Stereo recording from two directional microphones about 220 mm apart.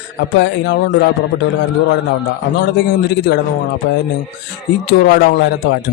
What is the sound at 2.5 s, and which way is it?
Speech, 50° left (ahead or behind).